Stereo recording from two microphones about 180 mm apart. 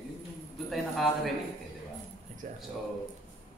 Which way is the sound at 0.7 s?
Centre (ahead or behind).